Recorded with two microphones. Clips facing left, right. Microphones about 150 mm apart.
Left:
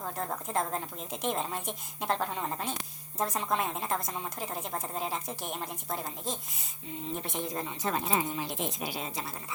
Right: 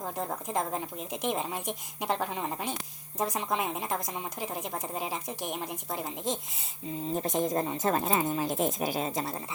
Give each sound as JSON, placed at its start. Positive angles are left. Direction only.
{"t": 0.0, "sound": "a woman's voice", "side_deg": -10}
{"t": 7.1, "sound": "a woman's voice", "side_deg": -40}